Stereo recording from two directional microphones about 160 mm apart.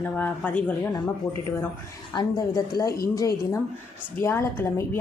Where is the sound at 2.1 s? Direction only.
25° left (ahead or behind).